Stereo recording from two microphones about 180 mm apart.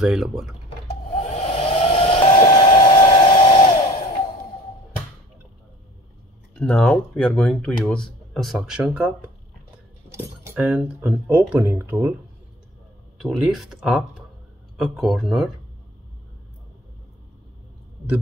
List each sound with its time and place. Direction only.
0.0 s speech: 5° right (ahead or behind)
1.1 s hair dryer: 40° left (ahead or behind); by 3.7 s 25° left (ahead or behind)
6.6 s speech: 5° left (ahead or behind); by 12.2 s 10° right (ahead or behind)
13.2 s speech: centre (ahead or behind)